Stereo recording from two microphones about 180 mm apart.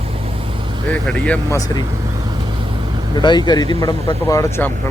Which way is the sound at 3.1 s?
25° left (ahead or behind).